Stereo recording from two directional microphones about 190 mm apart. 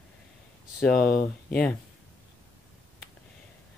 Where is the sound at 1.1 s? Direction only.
50° left (ahead or behind).